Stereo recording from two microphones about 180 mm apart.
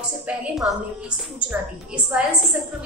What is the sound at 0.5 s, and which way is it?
A woman's voice, 5° right (ahead or behind).